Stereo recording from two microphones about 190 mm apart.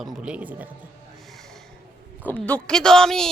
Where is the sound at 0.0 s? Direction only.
5° right (ahead or behind).